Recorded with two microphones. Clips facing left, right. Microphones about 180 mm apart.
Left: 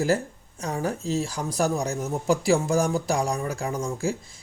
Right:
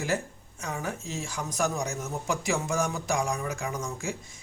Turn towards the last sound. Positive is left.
turn(degrees=35)  # may be behind; listen again after turning